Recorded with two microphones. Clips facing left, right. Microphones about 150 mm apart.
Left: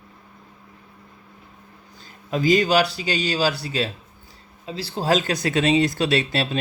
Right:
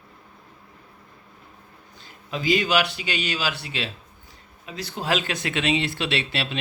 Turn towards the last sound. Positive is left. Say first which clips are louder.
# left 5 dB
turn(degrees=40)  # may be behind; listen again after turning